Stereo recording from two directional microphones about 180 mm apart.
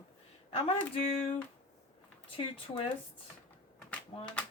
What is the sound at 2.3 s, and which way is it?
Speech, 30° left (ahead or behind).